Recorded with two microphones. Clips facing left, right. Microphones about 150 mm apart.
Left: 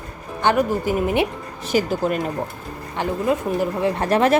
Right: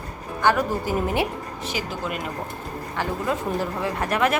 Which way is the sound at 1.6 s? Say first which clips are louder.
Left 10 dB; 45° left (ahead or behind).